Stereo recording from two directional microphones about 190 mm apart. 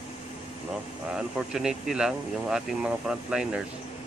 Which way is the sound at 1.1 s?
5° right (ahead or behind).